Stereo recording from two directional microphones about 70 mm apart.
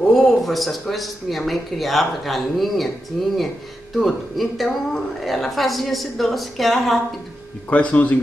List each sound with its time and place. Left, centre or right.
0.1 s a woman's voice: centre
4.0 s a woman's voice: centre
7.7 s speech: left